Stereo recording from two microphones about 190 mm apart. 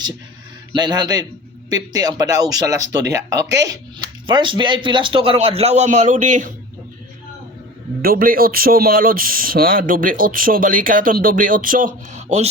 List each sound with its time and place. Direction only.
0.7 s a man's voice: 20° right (ahead or behind); by 6.5 s 40° right (ahead or behind)
8.0 s speech: 50° right (ahead or behind)